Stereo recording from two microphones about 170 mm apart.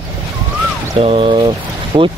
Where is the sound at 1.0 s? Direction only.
35° right (ahead or behind).